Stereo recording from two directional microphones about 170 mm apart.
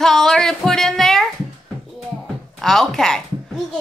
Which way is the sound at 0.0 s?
Centre (ahead or behind).